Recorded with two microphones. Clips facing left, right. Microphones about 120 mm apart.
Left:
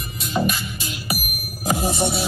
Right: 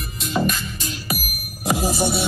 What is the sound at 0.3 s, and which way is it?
Music, 5° left (ahead or behind).